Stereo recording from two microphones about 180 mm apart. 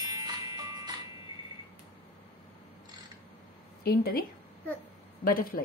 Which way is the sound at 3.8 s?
60° left (ahead or behind).